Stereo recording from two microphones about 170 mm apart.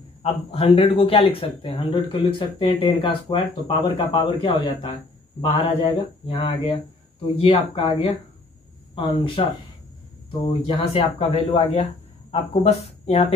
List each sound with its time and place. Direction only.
0.2 s speech: 35° left (ahead or behind)
10.8 s speech: 35° left (ahead or behind)